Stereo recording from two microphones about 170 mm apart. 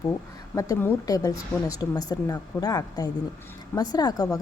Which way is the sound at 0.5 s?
15° left (ahead or behind).